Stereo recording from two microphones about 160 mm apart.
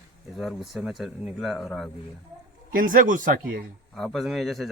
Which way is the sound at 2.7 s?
60° right (ahead or behind).